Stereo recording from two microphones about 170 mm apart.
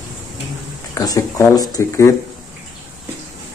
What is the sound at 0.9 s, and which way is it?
Speech, 20° left (ahead or behind).